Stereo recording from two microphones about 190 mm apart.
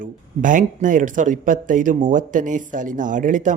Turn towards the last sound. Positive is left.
turn(degrees=-45)  # may be behind; listen again after turning